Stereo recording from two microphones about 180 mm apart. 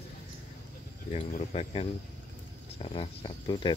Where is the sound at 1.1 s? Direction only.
35° left (ahead or behind).